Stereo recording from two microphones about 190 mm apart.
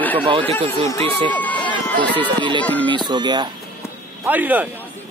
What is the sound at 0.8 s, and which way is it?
Speech, 15° left (ahead or behind).